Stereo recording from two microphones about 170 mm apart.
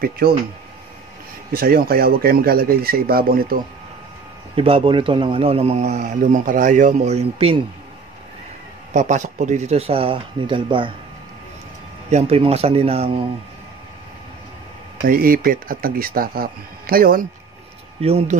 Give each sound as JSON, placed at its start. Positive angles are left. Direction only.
{"t": 0.2, "sound": "speech", "side_deg": -65}
{"t": 1.5, "sound": "speech", "side_deg": -60}
{"t": 4.6, "sound": "a man's voice", "side_deg": -30}
{"t": 8.9, "sound": "a man's voice", "side_deg": -45}
{"t": 12.1, "sound": "a man's voice", "side_deg": -40}
{"t": 15.0, "sound": "speech", "side_deg": -55}
{"t": 18.0, "sound": "a man's voice", "side_deg": -40}